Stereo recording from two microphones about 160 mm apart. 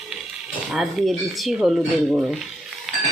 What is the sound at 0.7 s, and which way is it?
Stir, centre (ahead or behind).